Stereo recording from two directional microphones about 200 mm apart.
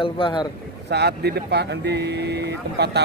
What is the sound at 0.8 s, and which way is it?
Speech, 55° right (ahead or behind).